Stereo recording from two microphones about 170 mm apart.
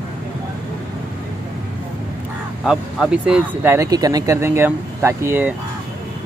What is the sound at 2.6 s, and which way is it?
Speech, 5° right (ahead or behind).